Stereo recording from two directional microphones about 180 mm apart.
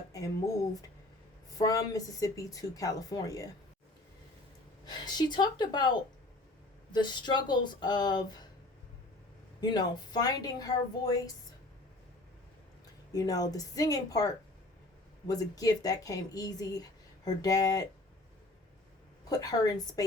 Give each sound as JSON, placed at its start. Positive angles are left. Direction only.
{"t": 0.1, "sound": "speech", "side_deg": 20}
{"t": 4.9, "sound": "speech", "side_deg": 25}
{"t": 9.6, "sound": "speech", "side_deg": 25}
{"t": 13.1, "sound": "speech", "side_deg": 20}
{"t": 15.3, "sound": "speech", "side_deg": 20}
{"t": 19.3, "sound": "speech", "side_deg": 20}